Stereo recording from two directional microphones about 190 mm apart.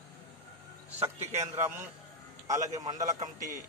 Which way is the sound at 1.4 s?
15° right (ahead or behind).